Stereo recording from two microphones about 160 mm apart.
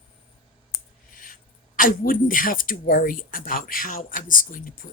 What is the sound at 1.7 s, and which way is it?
Speech, 60° left (ahead or behind).